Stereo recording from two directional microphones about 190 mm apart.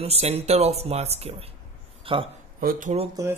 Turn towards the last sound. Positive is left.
turn(degrees=-40)  # may be behind; listen again after turning